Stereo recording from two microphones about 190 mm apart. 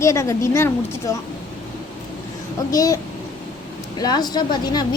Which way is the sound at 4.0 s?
20° left (ahead or behind).